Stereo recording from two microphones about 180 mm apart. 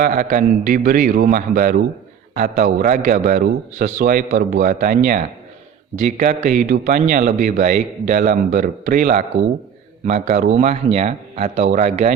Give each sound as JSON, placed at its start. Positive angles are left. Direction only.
{"t": 0.0, "sound": "a man's voice", "side_deg": -45}